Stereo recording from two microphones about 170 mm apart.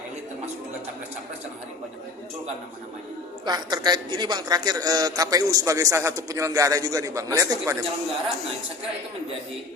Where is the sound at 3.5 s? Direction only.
25° right (ahead or behind).